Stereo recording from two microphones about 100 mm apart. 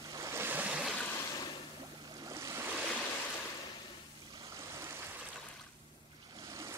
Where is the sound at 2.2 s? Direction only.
30° right (ahead or behind).